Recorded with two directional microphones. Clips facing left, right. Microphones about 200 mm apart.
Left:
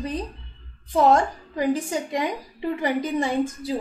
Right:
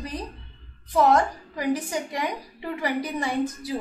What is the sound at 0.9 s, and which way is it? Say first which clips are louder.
A woman's voice: left 1 dB; 25° left (ahead or behind).